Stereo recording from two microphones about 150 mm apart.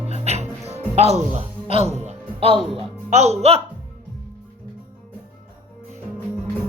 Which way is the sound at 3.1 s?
45° right (ahead or behind).